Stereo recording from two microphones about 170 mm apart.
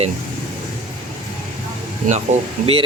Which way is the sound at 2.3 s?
45° right (ahead or behind).